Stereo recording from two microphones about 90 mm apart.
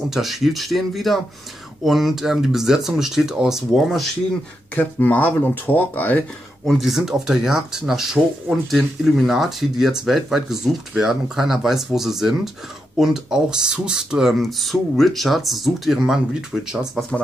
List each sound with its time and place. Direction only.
0.1 s speech: 5° right (ahead or behind)
4.7 s speech: 20° left (ahead or behind)
6.6 s speech: centre (ahead or behind)